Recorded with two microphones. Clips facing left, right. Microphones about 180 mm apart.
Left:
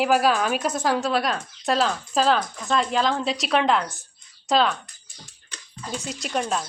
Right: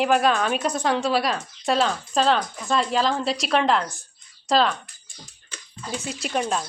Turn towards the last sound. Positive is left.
turn(degrees=0)  # may be behind; listen again after turning